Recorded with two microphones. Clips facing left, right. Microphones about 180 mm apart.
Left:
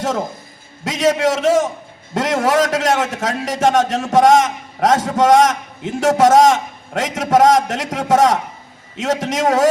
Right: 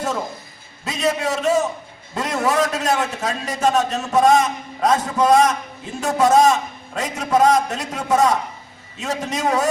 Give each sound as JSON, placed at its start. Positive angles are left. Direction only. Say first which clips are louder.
{"t": 0.9, "sound": "a man's voice", "louder": "left 6 dB", "side_deg": 90}